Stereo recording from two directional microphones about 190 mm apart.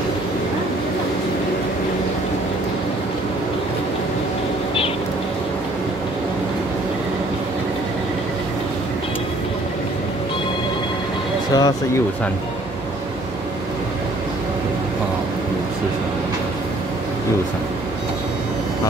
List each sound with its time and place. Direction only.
11.5 s speech: 20° left (ahead or behind)